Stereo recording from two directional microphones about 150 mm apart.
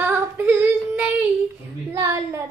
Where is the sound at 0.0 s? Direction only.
15° right (ahead or behind).